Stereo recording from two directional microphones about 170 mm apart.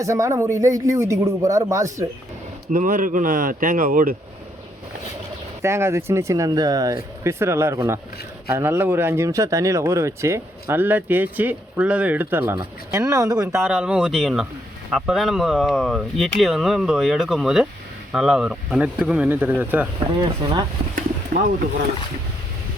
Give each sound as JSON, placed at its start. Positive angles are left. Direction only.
{"t": 0.0, "sound": "speech", "side_deg": -20}
{"t": 2.7, "sound": "speech", "side_deg": -50}
{"t": 5.6, "sound": "speech", "side_deg": -15}
{"t": 13.7, "sound": "speech", "side_deg": -5}
{"t": 20.1, "sound": "speech", "side_deg": -30}